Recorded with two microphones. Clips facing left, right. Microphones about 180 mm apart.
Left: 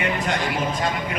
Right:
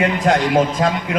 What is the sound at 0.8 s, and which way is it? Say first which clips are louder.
Speech: right 7 dB; 75° right (ahead or behind).